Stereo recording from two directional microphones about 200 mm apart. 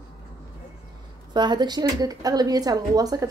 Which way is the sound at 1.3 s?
20° right (ahead or behind).